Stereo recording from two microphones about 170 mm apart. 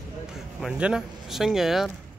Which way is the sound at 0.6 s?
5° right (ahead or behind).